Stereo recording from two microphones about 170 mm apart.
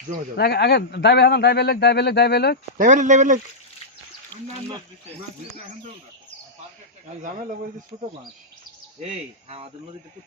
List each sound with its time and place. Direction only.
0.3 s a man's voice: 70° left (ahead or behind)
2.7 s speech: 45° right (ahead or behind)